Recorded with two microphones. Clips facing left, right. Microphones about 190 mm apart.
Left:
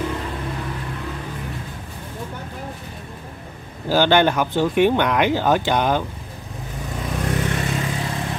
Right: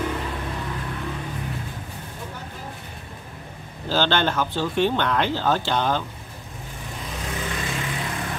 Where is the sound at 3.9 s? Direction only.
10° left (ahead or behind).